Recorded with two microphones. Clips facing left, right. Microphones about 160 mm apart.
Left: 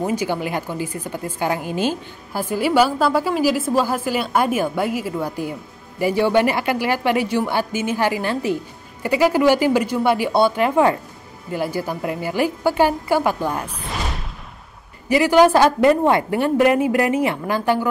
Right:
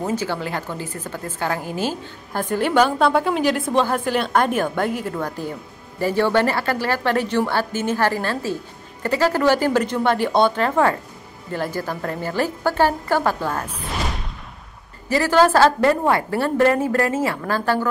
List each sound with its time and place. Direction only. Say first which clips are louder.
0.0 s a woman's voice: left 2 dB; 15° left (ahead or behind)
2.3 s a woman's voice: left 1 dB; 5° left (ahead or behind)
15.0 s a woman's voice: left 3 dB; 15° left (ahead or behind)